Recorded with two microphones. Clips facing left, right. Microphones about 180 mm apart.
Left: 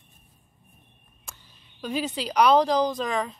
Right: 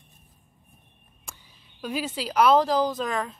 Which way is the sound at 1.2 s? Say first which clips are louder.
Right 1 dB; 10° right (ahead or behind).